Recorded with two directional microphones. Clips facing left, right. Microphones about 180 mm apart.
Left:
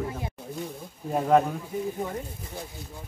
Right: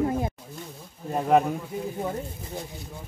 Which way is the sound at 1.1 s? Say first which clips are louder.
Even; 5° right (ahead or behind).